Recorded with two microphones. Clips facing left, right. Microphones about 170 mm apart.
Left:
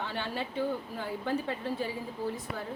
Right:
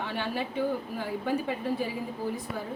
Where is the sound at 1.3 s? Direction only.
10° right (ahead or behind).